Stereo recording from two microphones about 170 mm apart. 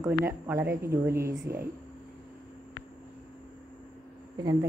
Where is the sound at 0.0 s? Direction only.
15° right (ahead or behind).